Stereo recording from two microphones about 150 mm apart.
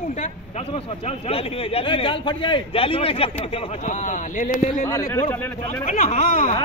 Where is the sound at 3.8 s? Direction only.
55° left (ahead or behind).